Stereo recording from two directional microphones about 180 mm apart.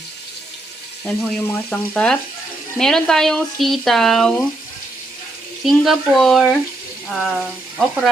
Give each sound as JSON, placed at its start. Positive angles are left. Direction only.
{"t": 1.0, "sound": "frying", "side_deg": 10}
{"t": 2.7, "sound": "speech", "side_deg": 0}
{"t": 5.6, "sound": "speech", "side_deg": 0}